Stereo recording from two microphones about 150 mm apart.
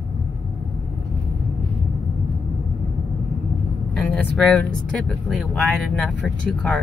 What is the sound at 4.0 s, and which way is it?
Speech, 10° left (ahead or behind).